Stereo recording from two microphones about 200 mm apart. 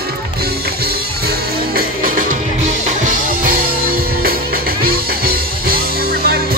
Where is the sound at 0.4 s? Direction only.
50° right (ahead or behind).